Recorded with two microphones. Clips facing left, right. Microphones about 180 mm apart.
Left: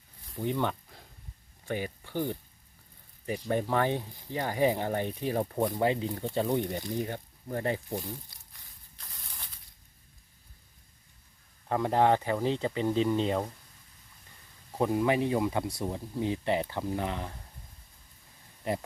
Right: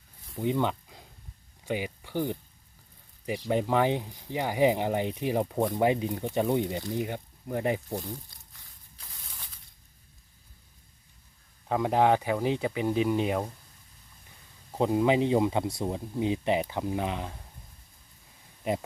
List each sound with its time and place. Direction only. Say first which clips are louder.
0.4 s speech: right 3 dB; 15° right (ahead or behind)
11.7 s speech: right 1 dB; 15° right (ahead or behind)
14.7 s speech: right 2 dB; 20° right (ahead or behind)
18.6 s speech: right 2 dB; 20° right (ahead or behind)